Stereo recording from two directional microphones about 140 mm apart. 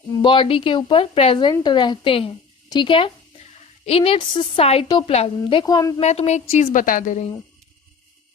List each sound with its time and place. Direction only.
0.2 s a woman's voice: 35° left (ahead or behind)
5.4 s a woman's voice: 35° left (ahead or behind)
6.0 s a woman's voice: 50° left (ahead or behind)